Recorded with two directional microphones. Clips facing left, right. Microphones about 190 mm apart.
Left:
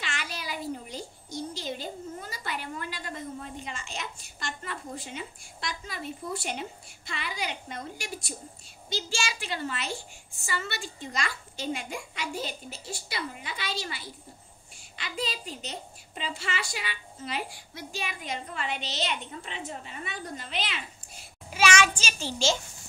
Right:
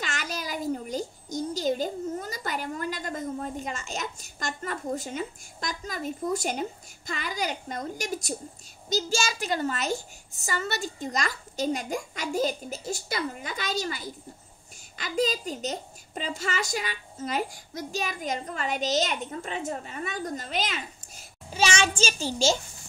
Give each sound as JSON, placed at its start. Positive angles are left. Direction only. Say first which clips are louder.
{"t": 0.0, "sound": "a sound", "louder": "right 4 dB", "side_deg": -45}
{"t": 8.8, "sound": "a woman's voice", "louder": "right 6 dB", "side_deg": -40}
{"t": 21.5, "sound": "a child's voice", "louder": "left 1 dB", "side_deg": -30}
{"t": 22.2, "sound": "a child's voice", "louder": "right 1 dB", "side_deg": -40}